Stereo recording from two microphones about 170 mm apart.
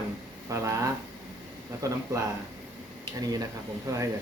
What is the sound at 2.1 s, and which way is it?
Speech, 20° right (ahead or behind).